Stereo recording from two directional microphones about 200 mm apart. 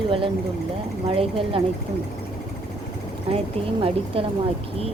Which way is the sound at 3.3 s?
30° right (ahead or behind).